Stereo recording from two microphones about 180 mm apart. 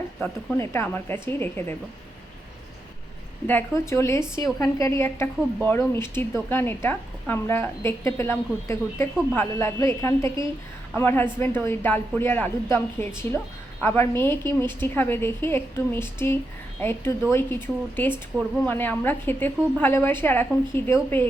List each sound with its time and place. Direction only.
0.5 s speech: 15° left (ahead or behind)
3.4 s speech: 15° left (ahead or behind)